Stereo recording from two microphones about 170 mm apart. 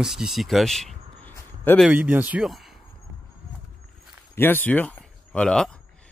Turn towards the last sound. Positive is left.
turn(degrees=5)  # may be behind; listen again after turning